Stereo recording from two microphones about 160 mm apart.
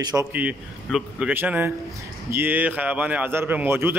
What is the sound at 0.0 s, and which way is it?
Speech, 20° right (ahead or behind).